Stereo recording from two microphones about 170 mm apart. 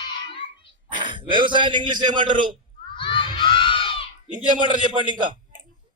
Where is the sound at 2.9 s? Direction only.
30° left (ahead or behind).